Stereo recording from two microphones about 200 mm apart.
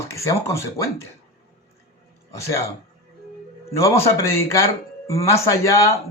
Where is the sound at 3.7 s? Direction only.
15° left (ahead or behind).